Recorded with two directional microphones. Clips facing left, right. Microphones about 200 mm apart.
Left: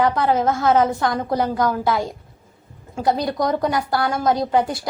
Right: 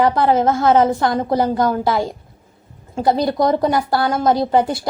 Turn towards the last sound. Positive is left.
turn(degrees=-30)  # may be behind; listen again after turning